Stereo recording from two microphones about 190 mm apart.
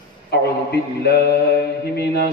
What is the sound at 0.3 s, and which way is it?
Mantra, 60° left (ahead or behind).